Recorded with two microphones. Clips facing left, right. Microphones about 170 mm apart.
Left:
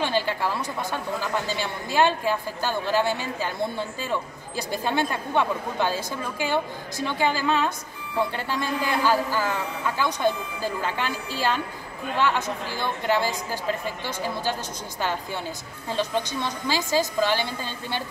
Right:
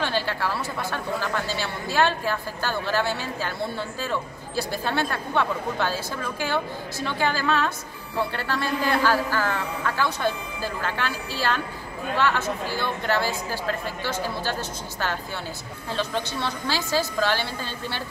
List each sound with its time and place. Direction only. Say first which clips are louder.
0.0 s a woman's voice: left 1 dB; 15° left (ahead or behind)
7.1 s a woman's voice: left 1 dB; 15° left (ahead or behind)
15.9 s a woman's voice: left 2 dB; 15° left (ahead or behind)